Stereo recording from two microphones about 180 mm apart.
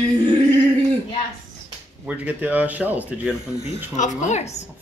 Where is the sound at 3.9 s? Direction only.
45° left (ahead or behind).